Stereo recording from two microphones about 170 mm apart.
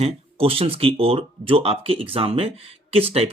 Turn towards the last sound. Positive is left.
turn(degrees=-35)  # may be behind; listen again after turning